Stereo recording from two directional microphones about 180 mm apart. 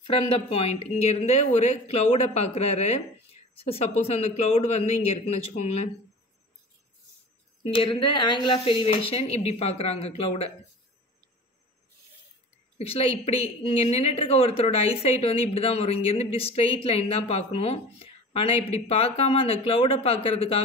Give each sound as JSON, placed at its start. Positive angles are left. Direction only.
{"t": 0.0, "sound": "a woman's voice", "side_deg": 30}
{"t": 7.6, "sound": "a woman's voice", "side_deg": 30}
{"t": 12.7, "sound": "a woman's voice", "side_deg": 30}